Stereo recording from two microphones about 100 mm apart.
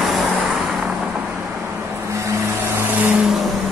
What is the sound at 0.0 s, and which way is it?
Vehicle, centre (ahead or behind).